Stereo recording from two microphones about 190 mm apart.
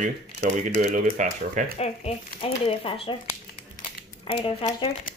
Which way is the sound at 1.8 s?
35° left (ahead or behind).